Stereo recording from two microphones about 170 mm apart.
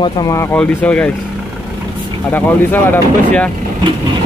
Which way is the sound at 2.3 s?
10° left (ahead or behind).